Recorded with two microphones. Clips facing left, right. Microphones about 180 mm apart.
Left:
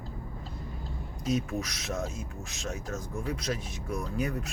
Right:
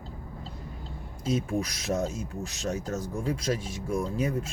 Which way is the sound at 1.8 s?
35° right (ahead or behind).